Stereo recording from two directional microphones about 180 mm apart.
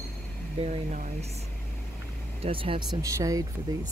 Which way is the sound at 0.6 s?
40° right (ahead or behind).